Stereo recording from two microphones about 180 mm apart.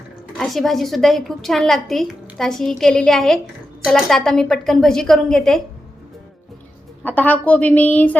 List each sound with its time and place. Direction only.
0.3 s a woman's voice: centre (ahead or behind)
7.0 s a woman's voice: 10° left (ahead or behind)